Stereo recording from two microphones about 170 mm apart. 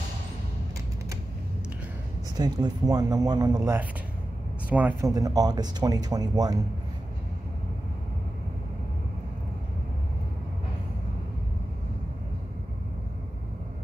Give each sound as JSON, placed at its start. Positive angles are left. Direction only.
{"t": 2.3, "sound": "speech", "side_deg": -25}
{"t": 5.1, "sound": "speech", "side_deg": -20}